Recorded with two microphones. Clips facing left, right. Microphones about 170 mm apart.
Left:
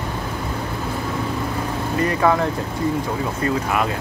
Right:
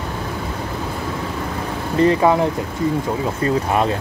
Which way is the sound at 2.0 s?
25° right (ahead or behind).